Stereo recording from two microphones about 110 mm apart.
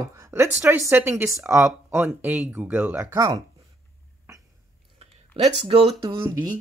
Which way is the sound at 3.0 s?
30° right (ahead or behind).